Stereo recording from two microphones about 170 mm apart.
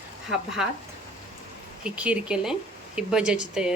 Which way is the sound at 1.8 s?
5° right (ahead or behind).